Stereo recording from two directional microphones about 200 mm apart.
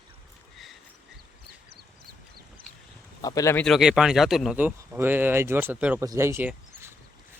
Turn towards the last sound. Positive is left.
turn(degrees=-10)  # may be behind; listen again after turning